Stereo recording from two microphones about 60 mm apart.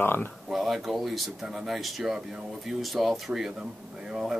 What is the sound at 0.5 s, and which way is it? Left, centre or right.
Speech, centre.